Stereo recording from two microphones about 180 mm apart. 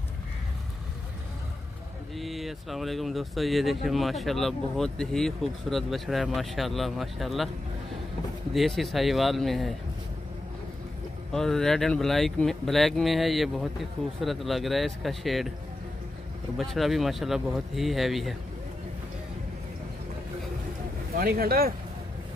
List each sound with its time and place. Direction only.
2.1 s speech: centre (ahead or behind)
8.5 s speech: centre (ahead or behind)
11.3 s speech: centre (ahead or behind)
16.5 s speech: centre (ahead or behind)
21.1 s speech: 55° right (ahead or behind)